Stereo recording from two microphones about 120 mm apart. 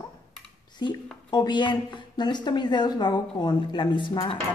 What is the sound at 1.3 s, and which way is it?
Speech, 40° left (ahead or behind).